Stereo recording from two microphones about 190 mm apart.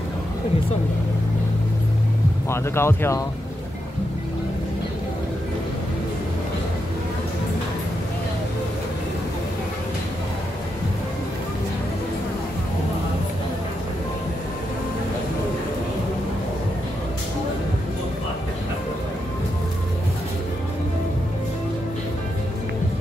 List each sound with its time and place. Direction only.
2.5 s speech: 15° left (ahead or behind)